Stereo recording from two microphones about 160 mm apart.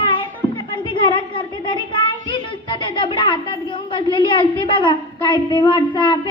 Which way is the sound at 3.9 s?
30° left (ahead or behind).